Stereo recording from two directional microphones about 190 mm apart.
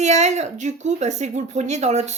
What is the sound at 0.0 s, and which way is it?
Speech, 35° right (ahead or behind).